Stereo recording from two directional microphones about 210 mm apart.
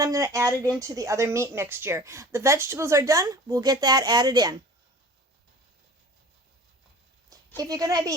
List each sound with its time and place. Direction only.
0.0 s speech: 15° right (ahead or behind)
7.3 s speech: 15° right (ahead or behind)